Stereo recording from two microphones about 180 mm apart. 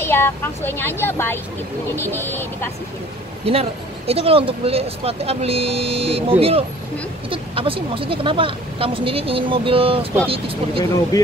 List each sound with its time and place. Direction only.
0.0 s vehicle: 10° left (ahead or behind)
0.7 s speech: 10° left (ahead or behind)
3.4 s a woman's voice: 35° right (ahead or behind)
10.8 s speech: 20° left (ahead or behind)